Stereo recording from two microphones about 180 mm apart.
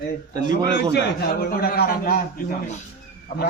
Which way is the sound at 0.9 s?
60° left (ahead or behind).